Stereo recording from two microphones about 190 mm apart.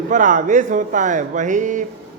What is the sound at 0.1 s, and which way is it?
A man's voice, 40° right (ahead or behind).